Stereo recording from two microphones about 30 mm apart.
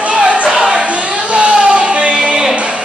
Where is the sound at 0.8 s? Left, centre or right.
Right.